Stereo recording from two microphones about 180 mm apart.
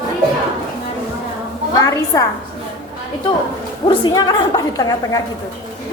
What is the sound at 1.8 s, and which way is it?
Speech, 20° left (ahead or behind).